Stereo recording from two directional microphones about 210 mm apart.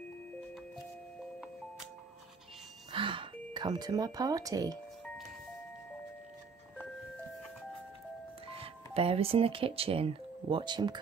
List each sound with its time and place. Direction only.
2.9 s speech: 25° right (ahead or behind)
8.5 s speech: 25° right (ahead or behind)